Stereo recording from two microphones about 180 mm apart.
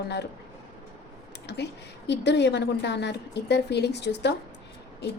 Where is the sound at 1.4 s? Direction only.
70° left (ahead or behind).